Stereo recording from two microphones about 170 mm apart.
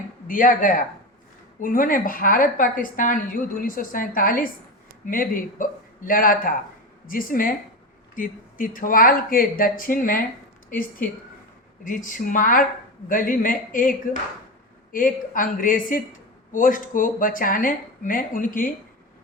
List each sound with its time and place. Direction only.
0.3 s speech: 50° left (ahead or behind)
11.8 s speech: 50° left (ahead or behind)